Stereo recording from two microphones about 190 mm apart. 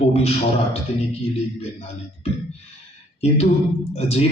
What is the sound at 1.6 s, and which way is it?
Speech, 35° left (ahead or behind).